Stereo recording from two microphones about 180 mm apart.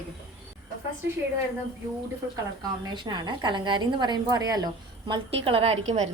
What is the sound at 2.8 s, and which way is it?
A woman's voice, 25° right (ahead or behind).